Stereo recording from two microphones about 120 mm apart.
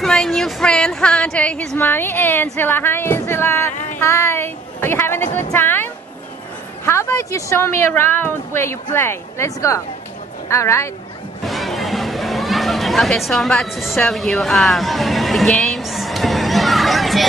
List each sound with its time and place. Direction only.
0.0 s music: 5° left (ahead or behind)
6.9 s a woman's voice: 20° left (ahead or behind)
11.4 s music: centre (ahead or behind)